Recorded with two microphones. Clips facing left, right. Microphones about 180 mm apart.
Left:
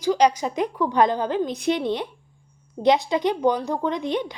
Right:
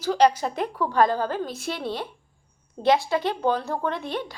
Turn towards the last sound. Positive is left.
turn(degrees=20)  # may be behind; listen again after turning